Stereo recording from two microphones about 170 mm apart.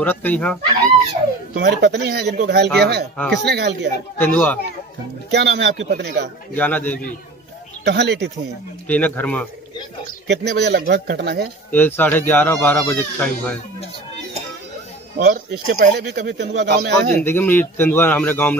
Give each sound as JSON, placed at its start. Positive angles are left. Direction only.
{"t": 0.0, "sound": "speech", "side_deg": 10}
{"t": 1.5, "sound": "speech", "side_deg": -90}
{"t": 3.2, "sound": "speech", "side_deg": 0}
{"t": 3.4, "sound": "speech", "side_deg": -75}
{"t": 4.2, "sound": "speech", "side_deg": 10}
{"t": 5.3, "sound": "speech", "side_deg": -80}
{"t": 6.5, "sound": "speech", "side_deg": 10}
{"t": 7.8, "sound": "speech", "side_deg": -80}
{"t": 8.8, "sound": "speech", "side_deg": 10}
{"t": 10.2, "sound": "speech", "side_deg": -80}
{"t": 11.7, "sound": "speech", "side_deg": 10}
{"t": 15.3, "sound": "speech", "side_deg": -70}
{"t": 17.2, "sound": "speech", "side_deg": 15}